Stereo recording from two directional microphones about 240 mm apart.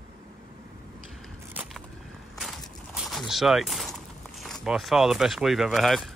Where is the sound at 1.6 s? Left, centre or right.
Centre.